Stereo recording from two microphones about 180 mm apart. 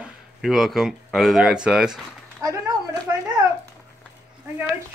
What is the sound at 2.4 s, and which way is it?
Speech, 20° right (ahead or behind).